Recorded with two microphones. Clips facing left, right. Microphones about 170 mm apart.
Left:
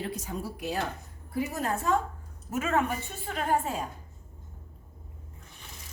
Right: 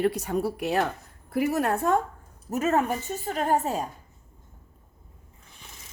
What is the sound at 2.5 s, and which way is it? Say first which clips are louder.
A woman's voice: right 4 dB; 40° right (ahead or behind).